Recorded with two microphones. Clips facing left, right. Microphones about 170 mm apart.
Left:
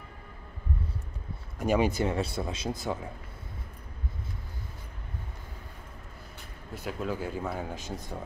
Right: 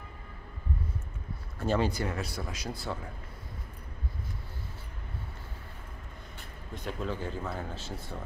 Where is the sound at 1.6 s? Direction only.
15° left (ahead or behind).